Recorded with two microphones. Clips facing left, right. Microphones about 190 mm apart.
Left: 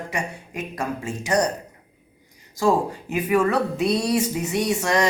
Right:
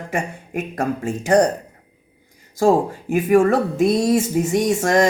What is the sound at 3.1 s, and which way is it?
Speech, 45° right (ahead or behind).